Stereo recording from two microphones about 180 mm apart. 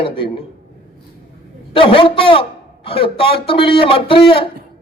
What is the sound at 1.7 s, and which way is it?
A man's voice, 30° left (ahead or behind).